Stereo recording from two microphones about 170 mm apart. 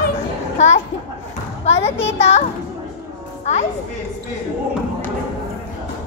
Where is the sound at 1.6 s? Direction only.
40° left (ahead or behind).